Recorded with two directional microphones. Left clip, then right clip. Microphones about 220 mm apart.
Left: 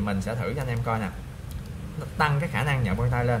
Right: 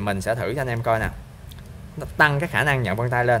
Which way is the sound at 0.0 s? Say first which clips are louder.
Right 6 dB; 45° right (ahead or behind).